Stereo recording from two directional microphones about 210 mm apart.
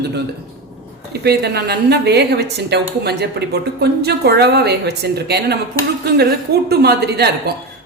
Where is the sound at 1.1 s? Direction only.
50° right (ahead or behind).